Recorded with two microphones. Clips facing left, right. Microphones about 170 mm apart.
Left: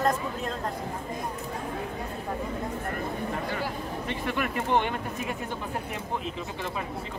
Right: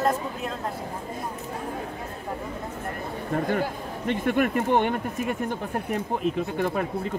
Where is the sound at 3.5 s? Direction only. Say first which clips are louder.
Right 5 dB; 50° right (ahead or behind).